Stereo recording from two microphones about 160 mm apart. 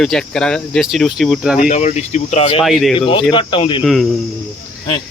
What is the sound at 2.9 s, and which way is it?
Speech, 30° left (ahead or behind).